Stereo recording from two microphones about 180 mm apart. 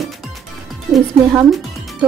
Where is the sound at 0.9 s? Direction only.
Centre (ahead or behind).